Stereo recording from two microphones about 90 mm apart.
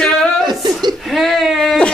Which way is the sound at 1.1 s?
Centre (ahead or behind).